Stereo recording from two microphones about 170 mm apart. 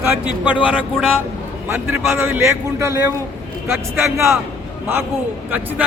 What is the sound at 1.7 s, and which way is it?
A man's voice, 15° right (ahead or behind).